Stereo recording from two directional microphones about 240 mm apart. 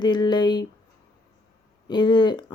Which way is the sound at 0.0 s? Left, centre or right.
Centre.